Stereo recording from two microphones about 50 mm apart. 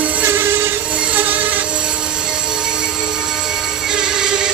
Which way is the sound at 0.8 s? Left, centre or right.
Right.